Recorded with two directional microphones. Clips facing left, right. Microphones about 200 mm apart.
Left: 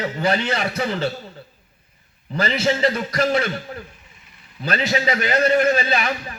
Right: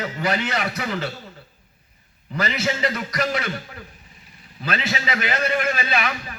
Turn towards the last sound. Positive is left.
turn(degrees=35)  # may be behind; listen again after turning